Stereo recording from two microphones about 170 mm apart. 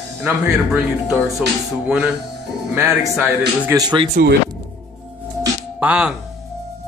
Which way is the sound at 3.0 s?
10° right (ahead or behind).